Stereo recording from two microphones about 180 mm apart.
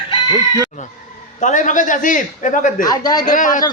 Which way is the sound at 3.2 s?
45° left (ahead or behind).